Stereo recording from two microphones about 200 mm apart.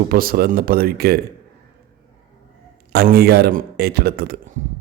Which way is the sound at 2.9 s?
50° right (ahead or behind).